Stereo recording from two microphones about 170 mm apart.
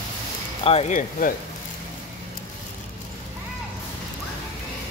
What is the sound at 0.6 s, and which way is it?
Speech, 40° left (ahead or behind).